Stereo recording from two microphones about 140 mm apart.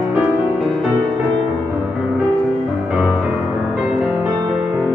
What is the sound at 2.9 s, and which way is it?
Music, 5° right (ahead or behind).